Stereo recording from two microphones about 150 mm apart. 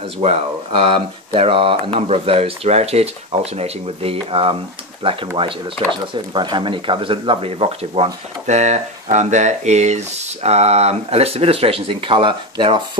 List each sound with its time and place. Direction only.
0.2 s speech: 40° right (ahead or behind)